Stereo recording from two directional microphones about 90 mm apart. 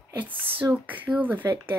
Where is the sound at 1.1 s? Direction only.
20° right (ahead or behind).